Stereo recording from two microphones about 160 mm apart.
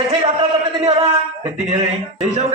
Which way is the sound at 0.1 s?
40° right (ahead or behind).